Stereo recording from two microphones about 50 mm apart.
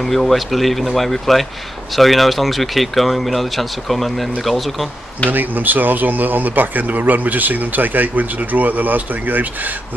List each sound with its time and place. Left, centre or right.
0.0 s speech: centre
5.3 s speech: right